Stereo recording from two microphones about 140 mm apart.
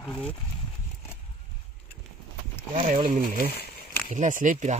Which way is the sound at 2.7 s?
70° right (ahead or behind).